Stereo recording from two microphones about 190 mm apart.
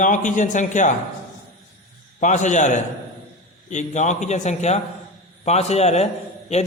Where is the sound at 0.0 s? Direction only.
40° left (ahead or behind).